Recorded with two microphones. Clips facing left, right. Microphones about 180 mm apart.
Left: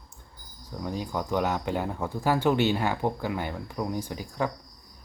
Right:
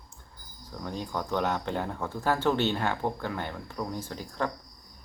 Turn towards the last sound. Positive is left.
turn(degrees=10)  # may be behind; listen again after turning